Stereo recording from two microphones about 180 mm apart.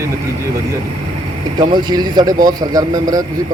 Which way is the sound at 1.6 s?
25° right (ahead or behind).